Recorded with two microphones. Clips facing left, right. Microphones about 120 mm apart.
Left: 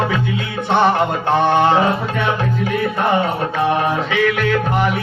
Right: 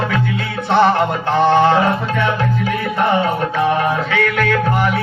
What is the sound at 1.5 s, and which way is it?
Music, 15° left (ahead or behind).